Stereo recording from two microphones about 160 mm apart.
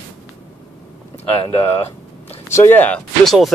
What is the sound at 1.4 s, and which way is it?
Speech, 40° left (ahead or behind).